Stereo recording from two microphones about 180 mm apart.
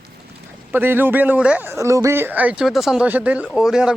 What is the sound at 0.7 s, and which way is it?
Speech, 10° right (ahead or behind).